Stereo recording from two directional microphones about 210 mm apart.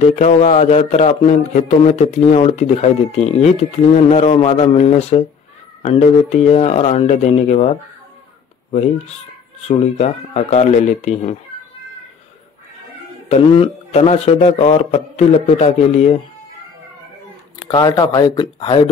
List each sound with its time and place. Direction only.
0.0 s speech: 35° left (ahead or behind)
9.6 s speech: 30° left (ahead or behind)
13.3 s speech: 30° left (ahead or behind)
17.6 s speech: 20° left (ahead or behind)